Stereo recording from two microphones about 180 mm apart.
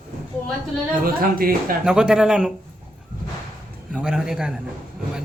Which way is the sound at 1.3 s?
55° right (ahead or behind).